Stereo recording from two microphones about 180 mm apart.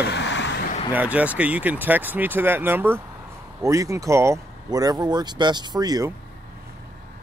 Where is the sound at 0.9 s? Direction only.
10° right (ahead or behind).